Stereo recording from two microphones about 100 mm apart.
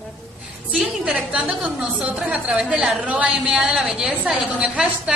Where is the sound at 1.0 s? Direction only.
10° right (ahead or behind).